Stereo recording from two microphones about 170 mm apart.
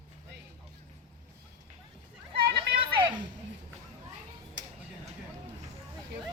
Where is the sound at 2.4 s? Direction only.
30° right (ahead or behind).